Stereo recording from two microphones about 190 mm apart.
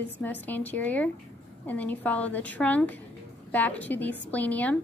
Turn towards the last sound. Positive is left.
turn(degrees=10)  # may be behind; listen again after turning